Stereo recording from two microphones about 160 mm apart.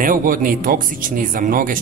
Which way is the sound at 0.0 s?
60° right (ahead or behind).